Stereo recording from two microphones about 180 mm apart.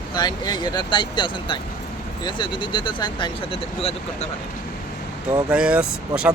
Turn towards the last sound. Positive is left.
turn(degrees=-5)  # may be behind; listen again after turning